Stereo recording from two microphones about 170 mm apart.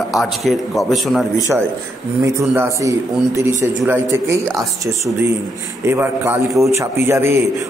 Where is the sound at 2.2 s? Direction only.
15° right (ahead or behind).